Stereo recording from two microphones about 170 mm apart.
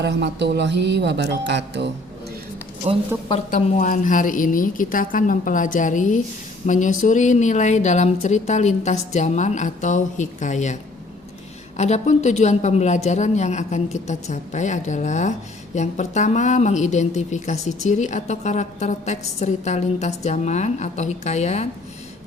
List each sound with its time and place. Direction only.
0.0 s speech: 85° right
2.8 s speech: 40° right (ahead or behind)
3.5 s speech: 50° left (ahead or behind)
11.8 s speech: 40° left (ahead or behind)